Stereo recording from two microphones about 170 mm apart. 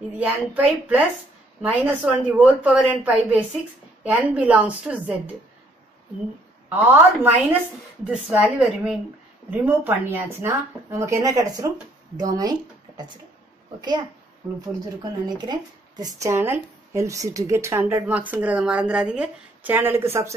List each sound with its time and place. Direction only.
0.2 s speech: 5° right (ahead or behind)
6.7 s speech: 10° right (ahead or behind)